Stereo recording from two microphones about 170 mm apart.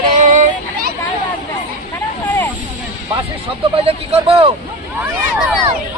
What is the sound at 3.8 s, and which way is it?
Speech, 35° right (ahead or behind).